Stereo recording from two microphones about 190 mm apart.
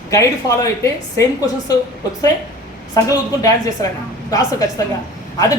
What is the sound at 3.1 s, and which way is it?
A woman's voice, 20° left (ahead or behind).